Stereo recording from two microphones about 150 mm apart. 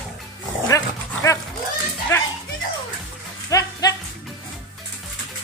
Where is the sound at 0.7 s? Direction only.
20° left (ahead or behind).